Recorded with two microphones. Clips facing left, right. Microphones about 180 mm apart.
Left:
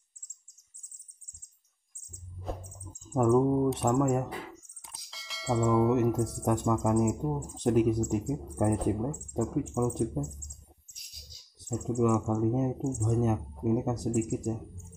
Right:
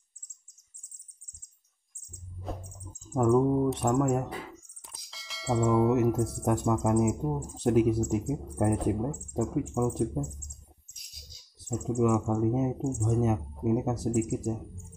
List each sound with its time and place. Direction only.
2.4 s mouse: centre (ahead or behind)
3.1 s speech: centre (ahead or behind)
11.7 s speech: 5° right (ahead or behind)